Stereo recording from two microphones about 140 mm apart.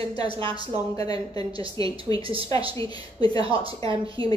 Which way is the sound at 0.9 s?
30° left (ahead or behind).